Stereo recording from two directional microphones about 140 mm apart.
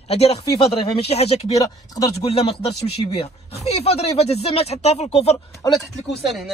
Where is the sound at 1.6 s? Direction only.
25° left (ahead or behind).